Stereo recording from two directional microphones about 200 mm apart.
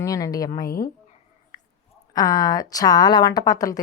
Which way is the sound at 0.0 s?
15° left (ahead or behind).